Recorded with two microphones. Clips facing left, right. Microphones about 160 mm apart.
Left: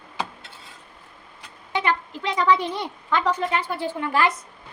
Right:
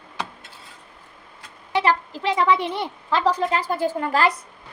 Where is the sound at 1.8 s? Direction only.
30° right (ahead or behind).